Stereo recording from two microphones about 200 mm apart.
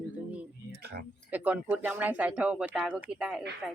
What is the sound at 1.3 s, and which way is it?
Speech, 10° right (ahead or behind).